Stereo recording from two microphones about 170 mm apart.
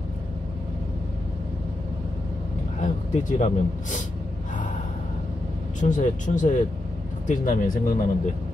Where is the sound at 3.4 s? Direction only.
45° left (ahead or behind).